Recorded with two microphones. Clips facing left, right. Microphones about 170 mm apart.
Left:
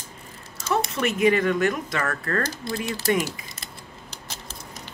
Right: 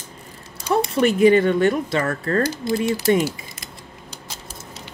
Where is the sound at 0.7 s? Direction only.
35° right (ahead or behind).